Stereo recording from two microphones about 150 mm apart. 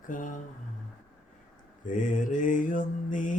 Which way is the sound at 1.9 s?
60° left (ahead or behind).